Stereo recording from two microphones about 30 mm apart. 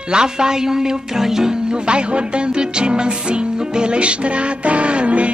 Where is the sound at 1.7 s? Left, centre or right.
Right.